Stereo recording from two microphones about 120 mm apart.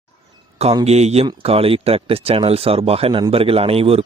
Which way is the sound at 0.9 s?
60° right (ahead or behind).